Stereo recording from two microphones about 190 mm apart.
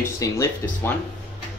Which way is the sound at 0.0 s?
15° left (ahead or behind).